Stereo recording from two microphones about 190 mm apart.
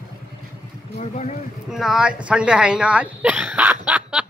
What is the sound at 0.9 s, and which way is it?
Speech, 35° left (ahead or behind).